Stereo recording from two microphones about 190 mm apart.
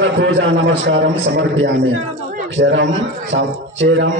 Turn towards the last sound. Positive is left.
turn(degrees=-80)